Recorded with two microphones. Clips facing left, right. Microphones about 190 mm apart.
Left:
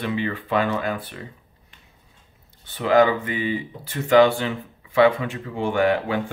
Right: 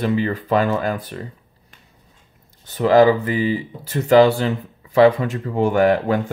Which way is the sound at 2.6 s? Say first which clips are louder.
Right 4 dB; 40° right (ahead or behind).